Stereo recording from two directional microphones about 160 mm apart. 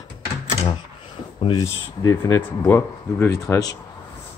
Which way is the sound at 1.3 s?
30° left (ahead or behind).